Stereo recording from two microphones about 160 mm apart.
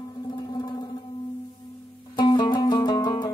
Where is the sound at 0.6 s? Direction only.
30° left (ahead or behind).